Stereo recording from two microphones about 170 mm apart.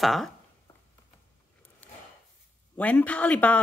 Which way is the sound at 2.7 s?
10° left (ahead or behind).